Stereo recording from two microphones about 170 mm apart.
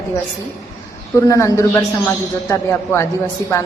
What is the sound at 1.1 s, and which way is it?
A man's voice, 15° left (ahead or behind).